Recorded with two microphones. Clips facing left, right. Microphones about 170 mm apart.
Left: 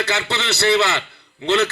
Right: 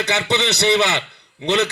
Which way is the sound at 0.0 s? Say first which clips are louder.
Right 3 dB; 20° right (ahead or behind).